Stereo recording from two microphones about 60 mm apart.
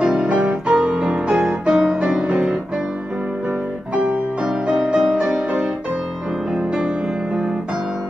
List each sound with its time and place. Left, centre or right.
0.3 s music: centre
3.9 s music: centre